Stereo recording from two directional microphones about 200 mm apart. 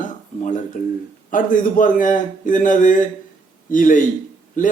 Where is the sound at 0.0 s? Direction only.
40° left (ahead or behind).